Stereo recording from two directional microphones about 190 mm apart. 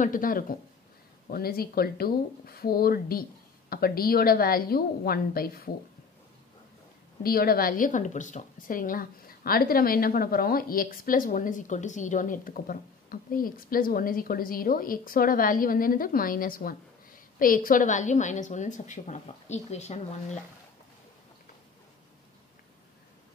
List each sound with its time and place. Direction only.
0.0 s a woman's voice: 45° left (ahead or behind)
7.2 s a woman's voice: 50° left (ahead or behind); by 20.0 s 35° left (ahead or behind)